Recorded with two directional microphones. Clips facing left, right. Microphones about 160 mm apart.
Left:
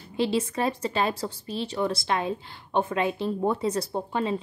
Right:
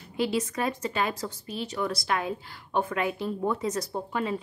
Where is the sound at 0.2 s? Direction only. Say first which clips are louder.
Left 2 dB; 30° left (ahead or behind).